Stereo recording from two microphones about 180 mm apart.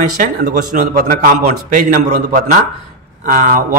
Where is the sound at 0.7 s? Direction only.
45° right (ahead or behind).